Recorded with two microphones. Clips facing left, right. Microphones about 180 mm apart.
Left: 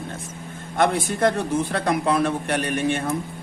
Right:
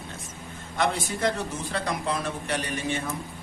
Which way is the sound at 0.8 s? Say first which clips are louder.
Left 6 dB; 55° left (ahead or behind).